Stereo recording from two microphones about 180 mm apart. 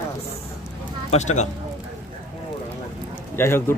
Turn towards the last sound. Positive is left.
turn(degrees=15)  # may be behind; listen again after turning